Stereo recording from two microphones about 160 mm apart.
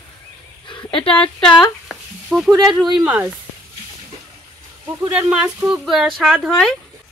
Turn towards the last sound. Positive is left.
turn(degrees=0)  # may be behind; listen again after turning